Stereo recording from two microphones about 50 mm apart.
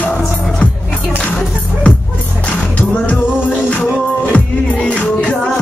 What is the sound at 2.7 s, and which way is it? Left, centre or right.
Music, left.